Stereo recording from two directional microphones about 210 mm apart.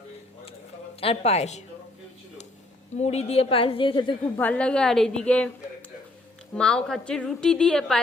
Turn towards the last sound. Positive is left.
turn(degrees=5)  # may be behind; listen again after turning